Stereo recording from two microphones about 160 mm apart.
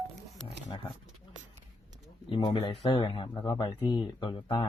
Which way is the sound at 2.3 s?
35° left (ahead or behind).